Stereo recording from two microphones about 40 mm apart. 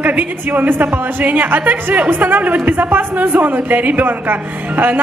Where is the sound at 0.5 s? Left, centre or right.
Right.